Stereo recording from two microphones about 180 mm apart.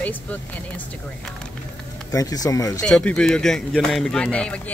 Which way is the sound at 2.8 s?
5° left (ahead or behind).